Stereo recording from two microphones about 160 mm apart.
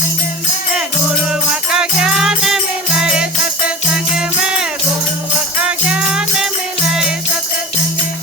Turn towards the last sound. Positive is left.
turn(degrees=-5)  # may be behind; listen again after turning